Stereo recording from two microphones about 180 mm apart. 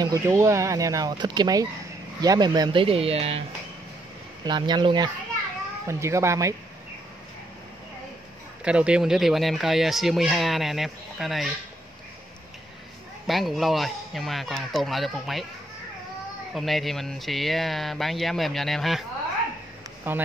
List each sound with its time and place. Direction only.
0.0 s speech: 20° right (ahead or behind); by 3.4 s 35° right (ahead or behind)
4.5 s speech: 25° right (ahead or behind)
8.6 s speech: 5° right (ahead or behind)
13.3 s speech: centre (ahead or behind)
16.5 s speech: centre (ahead or behind)
20.1 s speech: 10° right (ahead or behind)